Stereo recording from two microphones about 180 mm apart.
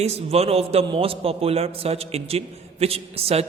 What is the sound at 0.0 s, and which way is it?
A man's voice, 35° right (ahead or behind).